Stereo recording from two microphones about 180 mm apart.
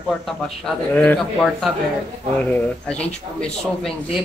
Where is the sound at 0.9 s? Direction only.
5° left (ahead or behind).